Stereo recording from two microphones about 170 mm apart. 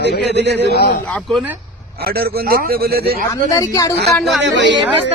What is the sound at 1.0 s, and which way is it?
Speech, 5° left (ahead or behind).